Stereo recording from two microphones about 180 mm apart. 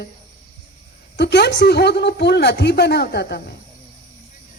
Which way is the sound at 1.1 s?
70° left (ahead or behind).